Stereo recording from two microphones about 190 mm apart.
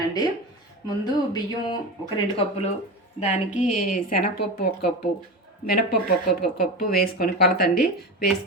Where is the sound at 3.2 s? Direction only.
35° left (ahead or behind).